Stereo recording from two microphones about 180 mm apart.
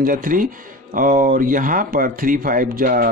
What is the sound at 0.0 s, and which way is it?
Speech, 50° right (ahead or behind).